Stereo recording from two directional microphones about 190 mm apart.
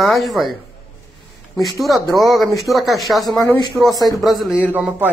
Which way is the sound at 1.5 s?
Centre (ahead or behind).